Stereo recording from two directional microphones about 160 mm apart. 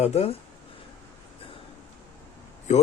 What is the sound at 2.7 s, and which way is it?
Speech, 50° left (ahead or behind).